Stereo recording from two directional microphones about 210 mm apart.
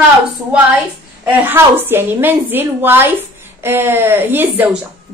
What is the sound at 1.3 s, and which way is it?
A woman's voice, 10° right (ahead or behind).